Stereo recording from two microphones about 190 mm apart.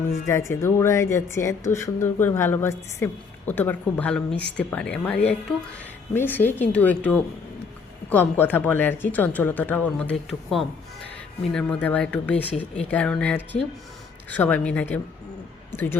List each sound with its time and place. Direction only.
0.3 s speech: 15° left (ahead or behind)